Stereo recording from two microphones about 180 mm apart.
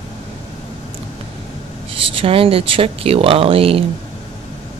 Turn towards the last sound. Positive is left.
turn(degrees=-30)  # may be behind; listen again after turning